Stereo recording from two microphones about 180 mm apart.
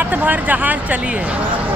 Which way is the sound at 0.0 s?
10° right (ahead or behind).